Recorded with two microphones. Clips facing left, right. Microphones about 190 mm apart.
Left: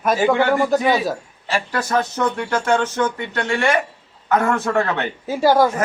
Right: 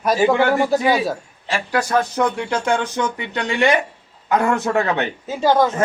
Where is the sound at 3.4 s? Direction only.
15° right (ahead or behind).